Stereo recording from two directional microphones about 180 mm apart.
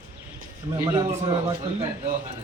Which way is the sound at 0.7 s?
15° right (ahead or behind).